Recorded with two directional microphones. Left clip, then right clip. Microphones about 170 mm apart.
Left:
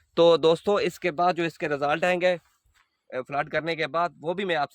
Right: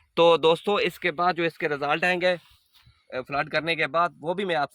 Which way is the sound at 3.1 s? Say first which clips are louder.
Right 1 dB; centre (ahead or behind).